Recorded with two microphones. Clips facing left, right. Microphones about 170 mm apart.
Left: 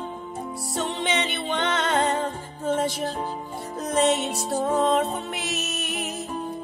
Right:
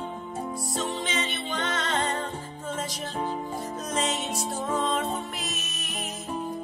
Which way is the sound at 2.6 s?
65° left (ahead or behind).